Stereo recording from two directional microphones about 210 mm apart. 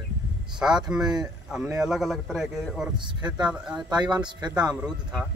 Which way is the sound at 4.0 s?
20° right (ahead or behind).